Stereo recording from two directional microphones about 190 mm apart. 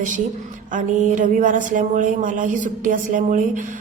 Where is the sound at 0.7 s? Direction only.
45° right (ahead or behind).